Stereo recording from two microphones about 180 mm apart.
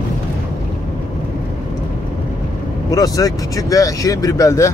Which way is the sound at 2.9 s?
20° left (ahead or behind).